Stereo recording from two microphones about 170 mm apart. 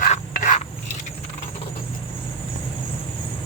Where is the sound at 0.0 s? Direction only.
45° left (ahead or behind).